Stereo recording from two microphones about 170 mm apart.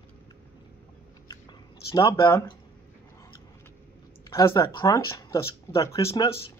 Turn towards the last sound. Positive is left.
turn(degrees=20)  # may be behind; listen again after turning